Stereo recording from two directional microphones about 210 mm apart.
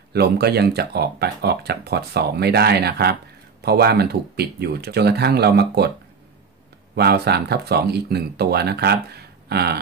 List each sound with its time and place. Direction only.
0.1 s speech: 50° right (ahead or behind)
7.0 s speech: 50° right (ahead or behind)